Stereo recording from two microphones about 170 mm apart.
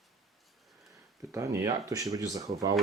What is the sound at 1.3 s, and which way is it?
Speech, 15° right (ahead or behind).